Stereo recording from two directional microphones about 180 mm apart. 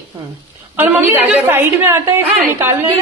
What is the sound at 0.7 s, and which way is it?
A woman's voice, 10° right (ahead or behind).